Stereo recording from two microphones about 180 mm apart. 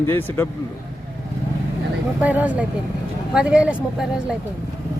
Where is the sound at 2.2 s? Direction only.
10° right (ahead or behind).